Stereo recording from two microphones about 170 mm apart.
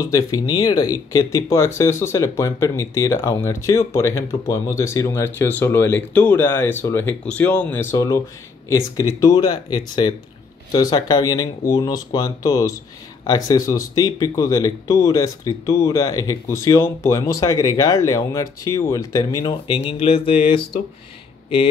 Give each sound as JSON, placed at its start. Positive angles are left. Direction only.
{"t": 0.0, "sound": "speech", "side_deg": 20}